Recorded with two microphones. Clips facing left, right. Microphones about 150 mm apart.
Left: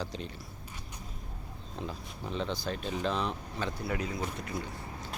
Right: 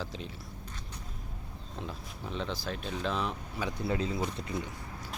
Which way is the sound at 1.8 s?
Centre (ahead or behind).